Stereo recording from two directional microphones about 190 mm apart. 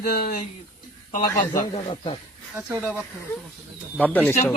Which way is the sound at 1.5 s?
30° left (ahead or behind).